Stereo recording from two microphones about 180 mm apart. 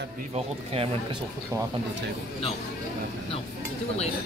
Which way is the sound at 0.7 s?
35° right (ahead or behind).